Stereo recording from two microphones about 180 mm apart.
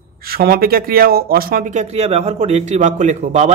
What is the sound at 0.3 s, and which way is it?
Speech, 55° right (ahead or behind).